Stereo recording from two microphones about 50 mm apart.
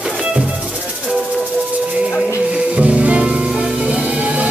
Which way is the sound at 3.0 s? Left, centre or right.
Right.